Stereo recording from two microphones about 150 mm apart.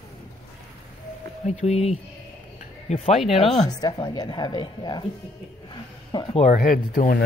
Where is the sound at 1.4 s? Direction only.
45° left (ahead or behind).